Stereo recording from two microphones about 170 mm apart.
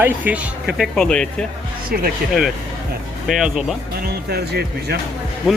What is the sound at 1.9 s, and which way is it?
Speech, 60° right (ahead or behind).